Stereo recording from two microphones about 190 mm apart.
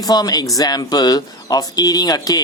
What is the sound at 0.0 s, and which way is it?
Speech, 20° left (ahead or behind).